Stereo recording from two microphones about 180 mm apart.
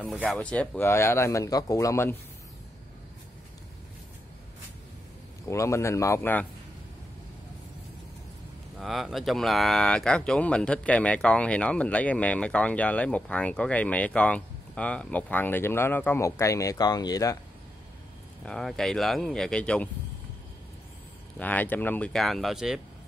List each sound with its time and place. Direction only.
0.4 s speech: 5° left (ahead or behind)
5.5 s speech: 15° left (ahead or behind)
8.7 s speech: centre (ahead or behind); by 17.4 s 20° left (ahead or behind)
18.4 s speech: centre (ahead or behind)
21.4 s speech: 10° left (ahead or behind)